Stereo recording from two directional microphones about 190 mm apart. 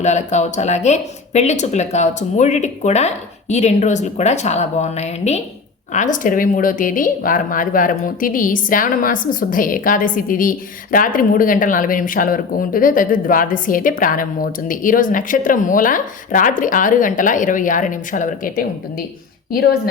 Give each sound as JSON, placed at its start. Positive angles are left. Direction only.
{"t": 0.0, "sound": "speech", "side_deg": 40}